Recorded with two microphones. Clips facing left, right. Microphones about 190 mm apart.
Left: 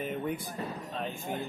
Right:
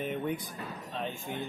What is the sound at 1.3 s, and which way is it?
Speech, 45° left (ahead or behind).